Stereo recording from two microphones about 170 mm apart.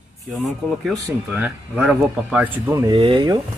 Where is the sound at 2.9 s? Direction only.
30° right (ahead or behind).